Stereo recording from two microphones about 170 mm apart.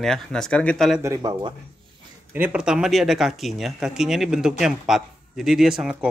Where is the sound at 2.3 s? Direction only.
10° right (ahead or behind).